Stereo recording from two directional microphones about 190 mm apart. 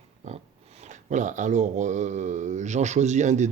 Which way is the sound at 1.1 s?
40° right (ahead or behind).